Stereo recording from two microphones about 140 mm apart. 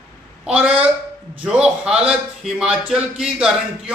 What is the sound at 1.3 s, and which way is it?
A man's voice, 10° right (ahead or behind).